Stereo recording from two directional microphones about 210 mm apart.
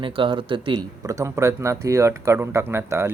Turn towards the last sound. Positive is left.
turn(degrees=-10)  # may be behind; listen again after turning